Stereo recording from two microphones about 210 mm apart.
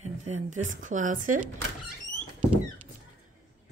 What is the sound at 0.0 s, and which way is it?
Speech, 35° right (ahead or behind).